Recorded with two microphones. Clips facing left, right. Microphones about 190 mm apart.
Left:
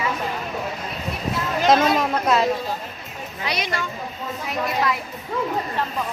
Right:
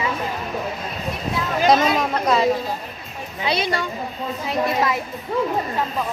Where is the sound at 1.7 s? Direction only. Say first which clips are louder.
Even; centre (ahead or behind).